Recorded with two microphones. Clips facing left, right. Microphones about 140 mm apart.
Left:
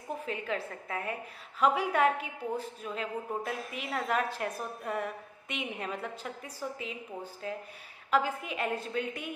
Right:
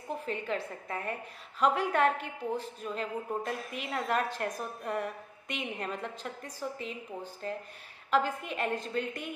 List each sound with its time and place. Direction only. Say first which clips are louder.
0.2 s a woman's voice: even; 5° left (ahead or behind)